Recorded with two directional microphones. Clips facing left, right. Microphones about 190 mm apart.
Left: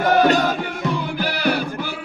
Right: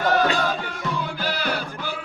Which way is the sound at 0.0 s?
15° left (ahead or behind).